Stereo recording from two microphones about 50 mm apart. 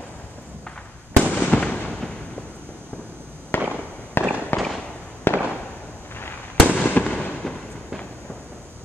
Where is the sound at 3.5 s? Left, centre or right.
Left.